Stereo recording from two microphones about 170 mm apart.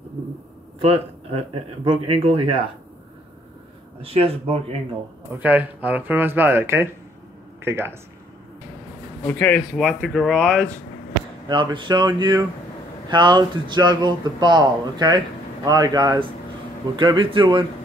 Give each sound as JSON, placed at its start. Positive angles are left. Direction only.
{"t": 0.7, "sound": "speech", "side_deg": -35}
{"t": 4.0, "sound": "speech", "side_deg": -35}
{"t": 5.3, "sound": "speech", "side_deg": -10}
{"t": 9.2, "sound": "speech", "side_deg": 10}
{"t": 11.4, "sound": "speech", "side_deg": -25}